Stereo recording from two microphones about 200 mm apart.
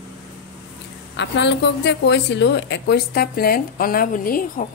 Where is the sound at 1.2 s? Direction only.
60° left (ahead or behind).